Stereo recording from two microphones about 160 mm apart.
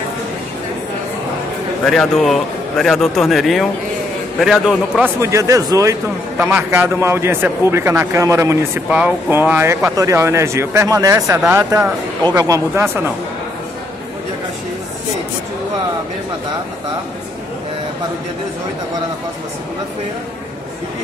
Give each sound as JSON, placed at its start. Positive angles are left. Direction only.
{"t": 1.9, "sound": "speech", "side_deg": 0}
{"t": 5.2, "sound": "a man's voice", "side_deg": -20}